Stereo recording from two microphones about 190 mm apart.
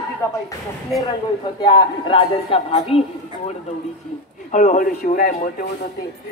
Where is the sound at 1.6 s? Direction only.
25° left (ahead or behind).